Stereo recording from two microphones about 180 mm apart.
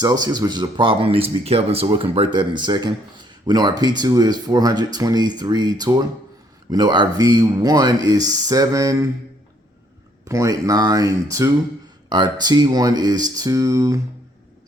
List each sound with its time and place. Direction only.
0.0 s speech: 20° right (ahead or behind)
10.2 s speech: 20° right (ahead or behind)